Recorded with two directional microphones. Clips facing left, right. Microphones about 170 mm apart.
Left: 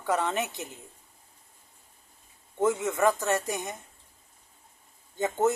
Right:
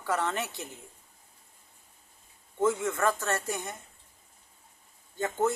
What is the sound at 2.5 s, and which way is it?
Speech, 20° left (ahead or behind).